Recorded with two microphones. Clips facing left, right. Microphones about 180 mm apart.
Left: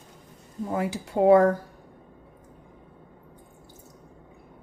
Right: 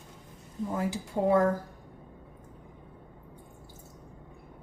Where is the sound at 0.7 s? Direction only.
70° left (ahead or behind).